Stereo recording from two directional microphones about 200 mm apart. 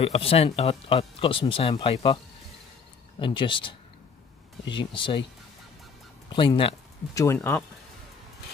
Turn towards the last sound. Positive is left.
turn(degrees=5)  # may be behind; listen again after turning